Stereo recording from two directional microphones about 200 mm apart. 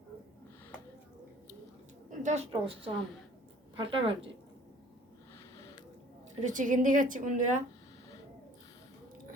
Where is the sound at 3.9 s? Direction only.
25° right (ahead or behind).